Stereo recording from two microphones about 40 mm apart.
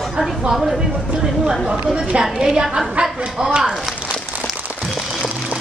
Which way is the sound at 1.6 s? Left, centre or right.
Right.